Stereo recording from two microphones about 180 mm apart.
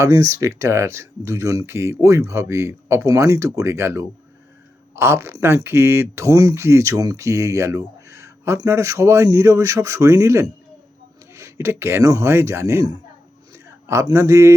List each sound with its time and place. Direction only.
0.0 s a man's voice: 20° right (ahead or behind)